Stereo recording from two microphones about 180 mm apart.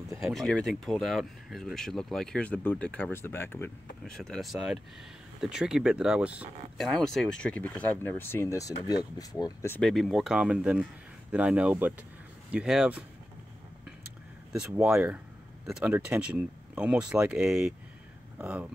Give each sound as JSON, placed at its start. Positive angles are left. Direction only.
{"t": 0.2, "sound": "speech", "side_deg": 0}
{"t": 9.8, "sound": "speech", "side_deg": 0}
{"t": 14.5, "sound": "speech", "side_deg": -5}